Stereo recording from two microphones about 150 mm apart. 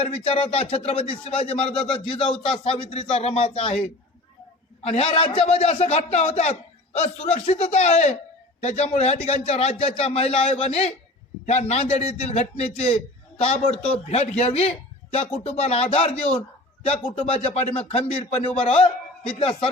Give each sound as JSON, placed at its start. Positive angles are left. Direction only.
{"t": 0.0, "sound": "a man's voice", "side_deg": 40}